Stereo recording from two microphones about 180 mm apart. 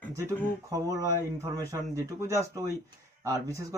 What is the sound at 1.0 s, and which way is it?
Speech, 15° right (ahead or behind).